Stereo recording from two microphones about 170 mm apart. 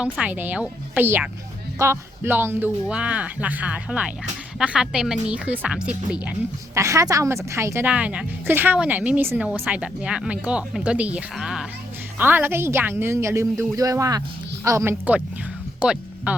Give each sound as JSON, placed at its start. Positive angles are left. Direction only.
{"t": 0.0, "sound": "speech", "side_deg": -10}
{"t": 6.7, "sound": "speech", "side_deg": -20}
{"t": 15.8, "sound": "a sound", "side_deg": -5}